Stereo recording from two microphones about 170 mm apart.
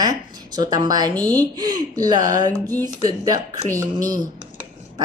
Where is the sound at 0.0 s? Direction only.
25° right (ahead or behind).